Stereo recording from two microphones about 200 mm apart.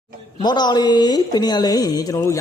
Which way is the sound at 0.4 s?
20° left (ahead or behind).